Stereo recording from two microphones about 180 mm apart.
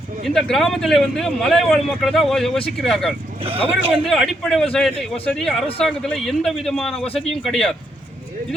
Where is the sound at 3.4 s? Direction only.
30° right (ahead or behind).